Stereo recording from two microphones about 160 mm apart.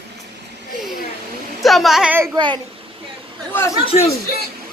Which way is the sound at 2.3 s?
30° right (ahead or behind).